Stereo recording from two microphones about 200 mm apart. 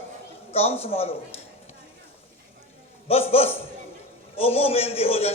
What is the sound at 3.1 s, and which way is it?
A man's voice, 30° left (ahead or behind).